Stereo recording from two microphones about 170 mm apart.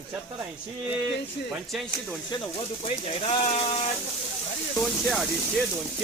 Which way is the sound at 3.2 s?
35° left (ahead or behind).